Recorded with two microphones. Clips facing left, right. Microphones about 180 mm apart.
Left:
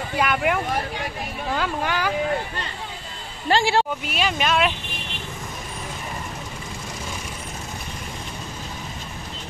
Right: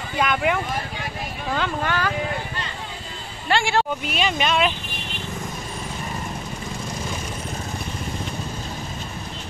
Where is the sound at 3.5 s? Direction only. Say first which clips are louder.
Left 1 dB; 35° left (ahead or behind).